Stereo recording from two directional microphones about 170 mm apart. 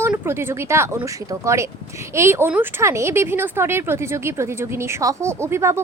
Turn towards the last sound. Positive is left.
turn(degrees=-15)  # may be behind; listen again after turning